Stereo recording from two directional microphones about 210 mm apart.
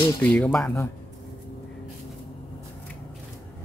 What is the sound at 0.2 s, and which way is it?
Speech, 5° left (ahead or behind).